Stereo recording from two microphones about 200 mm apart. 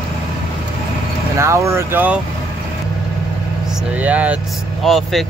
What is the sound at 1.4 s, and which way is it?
Speech, 15° right (ahead or behind).